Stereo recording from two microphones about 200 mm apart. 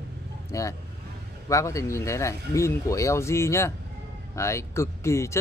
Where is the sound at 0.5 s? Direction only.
15° left (ahead or behind).